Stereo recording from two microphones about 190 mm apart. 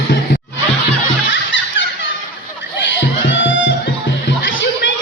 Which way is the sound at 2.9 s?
75° left (ahead or behind).